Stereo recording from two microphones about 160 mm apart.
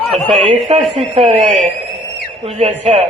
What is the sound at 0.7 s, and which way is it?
A man's voice, 40° right (ahead or behind).